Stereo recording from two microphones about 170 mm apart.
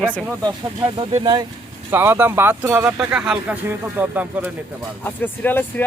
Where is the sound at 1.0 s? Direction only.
30° right (ahead or behind).